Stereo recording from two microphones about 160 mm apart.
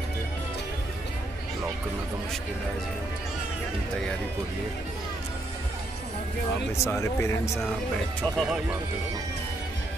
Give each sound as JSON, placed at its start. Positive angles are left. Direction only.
{"t": 6.8, "sound": "speech", "side_deg": 15}
{"t": 8.2, "sound": "speech", "side_deg": 5}